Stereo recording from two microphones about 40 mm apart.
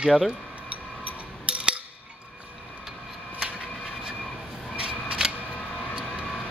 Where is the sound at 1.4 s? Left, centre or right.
Right.